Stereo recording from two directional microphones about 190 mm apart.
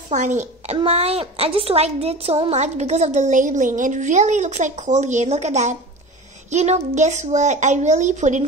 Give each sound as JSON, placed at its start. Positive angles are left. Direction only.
{"t": 0.1, "sound": "a woman's voice", "side_deg": -40}